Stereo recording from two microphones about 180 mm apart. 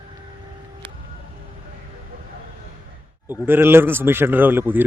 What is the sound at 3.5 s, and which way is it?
A man's voice, 10° right (ahead or behind).